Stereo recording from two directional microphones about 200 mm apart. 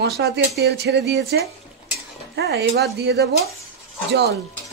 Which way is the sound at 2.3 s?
55° right (ahead or behind).